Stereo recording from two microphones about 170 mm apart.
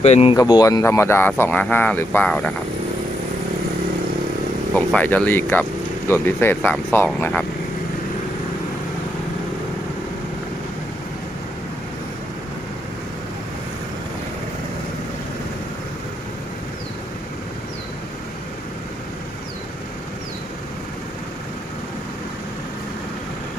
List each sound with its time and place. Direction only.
0.0 s speech: 40° left (ahead or behind)
0.3 s speech: 25° left (ahead or behind); by 2.5 s 10° left (ahead or behind)
4.7 s speech: 10° left (ahead or behind)